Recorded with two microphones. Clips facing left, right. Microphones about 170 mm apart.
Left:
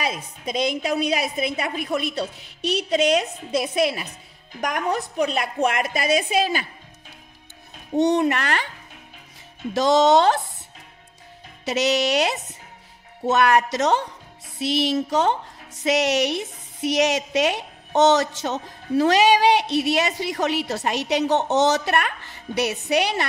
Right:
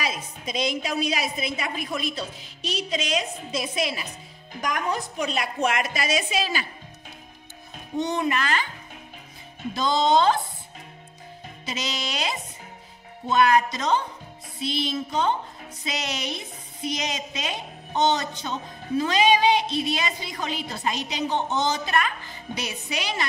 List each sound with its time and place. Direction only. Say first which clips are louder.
0.0 s a woman's voice: left 3 dB; 55° left (ahead or behind)
7.9 s speech: left 6 dB; 70° left (ahead or behind)
9.8 s speech: left 5 dB; 80° left
11.6 s speech: left 11 dB; 70° left (ahead or behind)
14.6 s music: left 6 dB; 80° left
15.8 s speech: left 11 dB; 75° left (ahead or behind)